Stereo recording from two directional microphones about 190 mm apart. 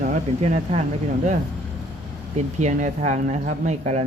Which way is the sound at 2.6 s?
40° right (ahead or behind).